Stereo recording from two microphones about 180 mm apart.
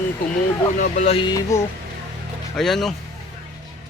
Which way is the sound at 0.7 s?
45° left (ahead or behind).